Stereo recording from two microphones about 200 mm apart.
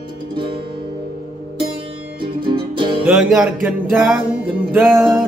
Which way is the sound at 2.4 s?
25° right (ahead or behind).